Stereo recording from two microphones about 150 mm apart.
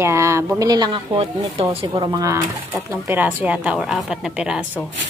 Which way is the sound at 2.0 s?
20° right (ahead or behind).